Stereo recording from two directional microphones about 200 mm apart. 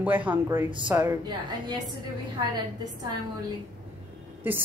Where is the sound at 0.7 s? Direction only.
20° right (ahead or behind).